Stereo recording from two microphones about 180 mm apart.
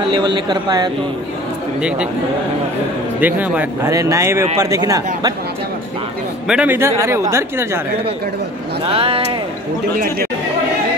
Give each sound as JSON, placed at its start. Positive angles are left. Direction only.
{"t": 0.1, "sound": "speech", "side_deg": -25}
{"t": 1.8, "sound": "a man's voice", "side_deg": -5}
{"t": 3.2, "sound": "speech", "side_deg": -10}
{"t": 6.4, "sound": "speech", "side_deg": -5}
{"t": 8.8, "sound": "speech", "side_deg": -30}
{"t": 9.9, "sound": "speech", "side_deg": -55}